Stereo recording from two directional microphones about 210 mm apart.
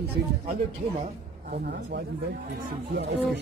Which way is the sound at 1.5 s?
45° right (ahead or behind).